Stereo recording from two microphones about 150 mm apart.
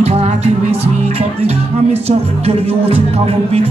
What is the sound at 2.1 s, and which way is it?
Music, 45° right (ahead or behind).